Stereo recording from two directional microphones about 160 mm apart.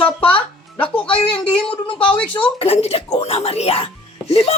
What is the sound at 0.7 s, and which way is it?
Speech, 10° left (ahead or behind).